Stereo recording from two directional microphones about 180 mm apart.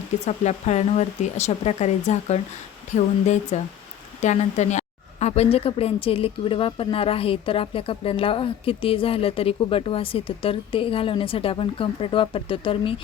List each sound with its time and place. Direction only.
0.3 s a woman's voice: 40° left (ahead or behind)